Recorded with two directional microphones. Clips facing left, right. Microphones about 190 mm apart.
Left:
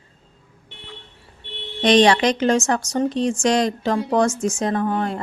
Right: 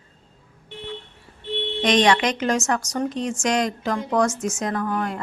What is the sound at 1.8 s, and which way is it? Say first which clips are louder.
A woman's voice: left 4 dB; 30° left (ahead or behind).